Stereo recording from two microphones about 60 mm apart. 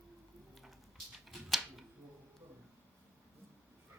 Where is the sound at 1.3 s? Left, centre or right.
Centre.